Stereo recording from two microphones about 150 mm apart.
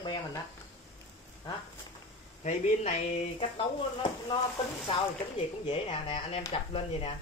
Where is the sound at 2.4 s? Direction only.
50° left (ahead or behind).